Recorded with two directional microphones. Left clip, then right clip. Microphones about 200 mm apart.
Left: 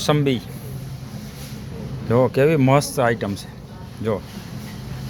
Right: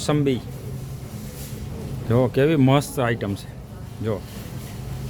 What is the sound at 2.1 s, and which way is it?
Speech, 20° right (ahead or behind).